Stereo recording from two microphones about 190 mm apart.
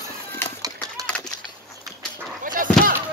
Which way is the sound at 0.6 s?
20° right (ahead or behind).